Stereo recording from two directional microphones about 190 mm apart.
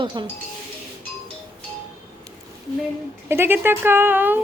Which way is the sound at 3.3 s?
10° right (ahead or behind).